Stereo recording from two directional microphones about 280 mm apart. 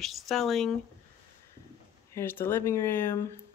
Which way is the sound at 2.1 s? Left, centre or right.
Centre.